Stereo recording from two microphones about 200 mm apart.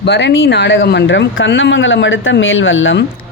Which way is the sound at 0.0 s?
60° left (ahead or behind).